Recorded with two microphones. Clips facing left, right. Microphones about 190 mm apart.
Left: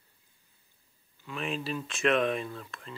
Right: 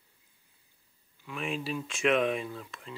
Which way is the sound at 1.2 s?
10° right (ahead or behind).